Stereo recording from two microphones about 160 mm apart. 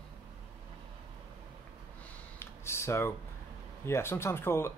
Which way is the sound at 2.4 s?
15° left (ahead or behind).